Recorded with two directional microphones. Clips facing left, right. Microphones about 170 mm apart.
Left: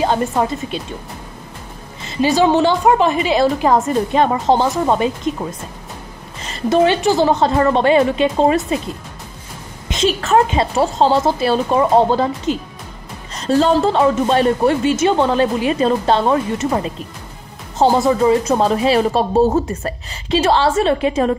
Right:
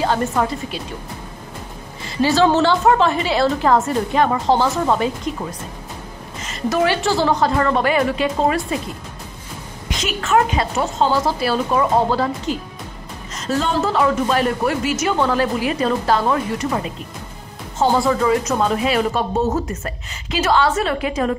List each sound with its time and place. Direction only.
0.0 s speech: 20° left (ahead or behind)
2.0 s a woman's voice: 20° left (ahead or behind)
6.4 s speech: 30° left (ahead or behind)
9.8 s speech: 30° left (ahead or behind)
13.3 s music: 35° left (ahead or behind)
13.8 s speech: 30° left (ahead or behind)
17.9 s speech: 25° left (ahead or behind)